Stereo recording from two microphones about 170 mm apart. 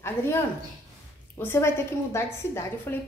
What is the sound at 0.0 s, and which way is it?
Speech, 15° left (ahead or behind).